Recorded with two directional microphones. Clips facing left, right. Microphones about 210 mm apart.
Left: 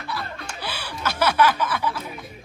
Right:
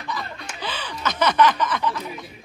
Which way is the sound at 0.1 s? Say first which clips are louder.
Even; 10° left (ahead or behind).